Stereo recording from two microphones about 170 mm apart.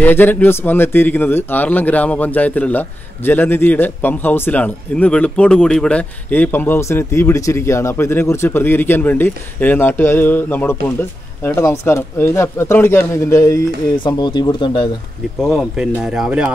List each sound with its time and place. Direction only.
0.0 s a man's voice: 10° left (ahead or behind); by 14.9 s 25° left (ahead or behind)
15.4 s speech: centre (ahead or behind)